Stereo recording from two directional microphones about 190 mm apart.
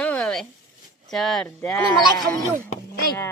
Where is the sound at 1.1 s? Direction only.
Centre (ahead or behind).